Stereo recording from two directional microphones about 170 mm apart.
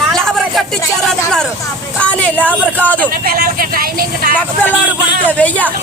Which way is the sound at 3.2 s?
55° right (ahead or behind).